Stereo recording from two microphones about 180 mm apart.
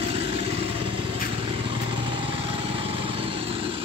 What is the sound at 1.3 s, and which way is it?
Lawn mower, 30° right (ahead or behind).